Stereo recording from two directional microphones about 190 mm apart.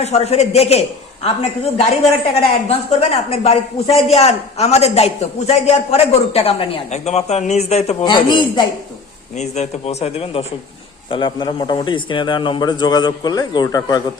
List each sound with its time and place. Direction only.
0.0 s a man's voice: 35° left (ahead or behind)
9.3 s a man's voice: 35° left (ahead or behind); by 14.0 s 20° left (ahead or behind)